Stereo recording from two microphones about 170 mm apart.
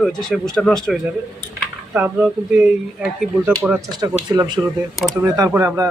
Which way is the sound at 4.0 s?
20° right (ahead or behind).